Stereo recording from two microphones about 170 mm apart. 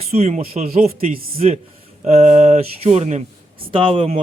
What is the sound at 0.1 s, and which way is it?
A man's voice, 40° right (ahead or behind).